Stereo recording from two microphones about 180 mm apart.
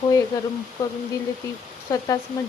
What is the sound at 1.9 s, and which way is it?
Speech, 20° left (ahead or behind).